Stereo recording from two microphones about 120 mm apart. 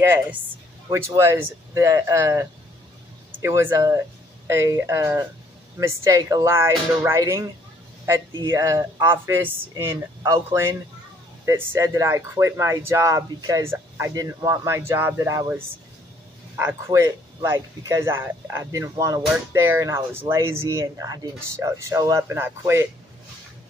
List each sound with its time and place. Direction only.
0.0 s speech: 20° right (ahead or behind)
3.4 s speech: 20° right (ahead or behind)